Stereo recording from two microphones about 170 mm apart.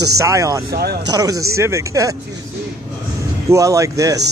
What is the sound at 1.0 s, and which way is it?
Speech, 20° right (ahead or behind).